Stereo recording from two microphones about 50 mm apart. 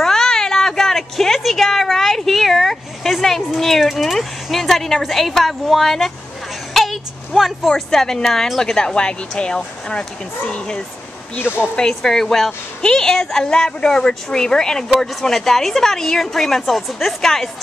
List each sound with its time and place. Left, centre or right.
0.0 s a sound: centre
5.3 s speech: centre
6.7 s vehicle: centre
7.7 s a woman's voice: centre
11.3 s speech: left
11.7 s a woman's voice: centre